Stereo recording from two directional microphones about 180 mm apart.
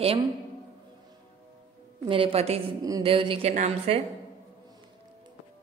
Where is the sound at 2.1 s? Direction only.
30° right (ahead or behind).